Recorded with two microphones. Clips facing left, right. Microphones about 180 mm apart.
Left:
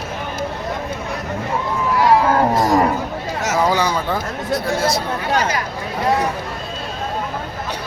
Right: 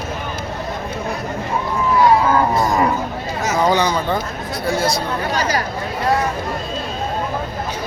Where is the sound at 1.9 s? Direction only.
85° left.